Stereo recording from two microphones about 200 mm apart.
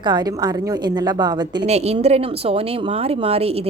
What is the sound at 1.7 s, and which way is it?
A woman's voice, 30° right (ahead or behind).